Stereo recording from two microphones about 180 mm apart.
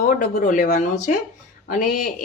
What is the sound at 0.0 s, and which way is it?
Speech, 50° left (ahead or behind).